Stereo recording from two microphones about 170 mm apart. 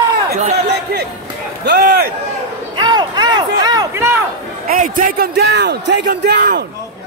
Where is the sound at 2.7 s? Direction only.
25° right (ahead or behind).